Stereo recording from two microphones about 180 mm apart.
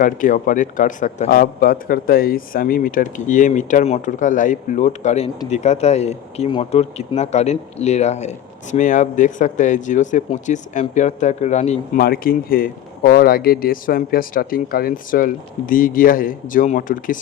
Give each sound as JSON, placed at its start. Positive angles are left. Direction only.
{"t": 0.0, "sound": "a man's voice", "side_deg": 50}
{"t": 11.9, "sound": "a man's voice", "side_deg": 55}